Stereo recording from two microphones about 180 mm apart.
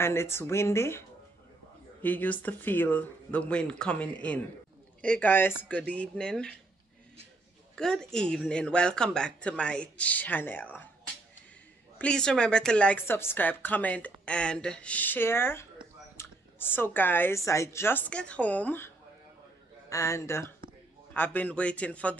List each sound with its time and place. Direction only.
0.0 s speech: 15° left (ahead or behind)
7.7 s speech: 5° left (ahead or behind)
12.0 s speech: 5° left (ahead or behind)
19.9 s speech: 15° left (ahead or behind)